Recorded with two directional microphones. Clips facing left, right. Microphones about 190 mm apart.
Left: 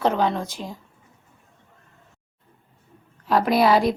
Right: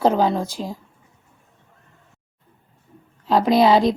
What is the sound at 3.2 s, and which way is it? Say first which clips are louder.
Speech: right 3 dB; 20° right (ahead or behind).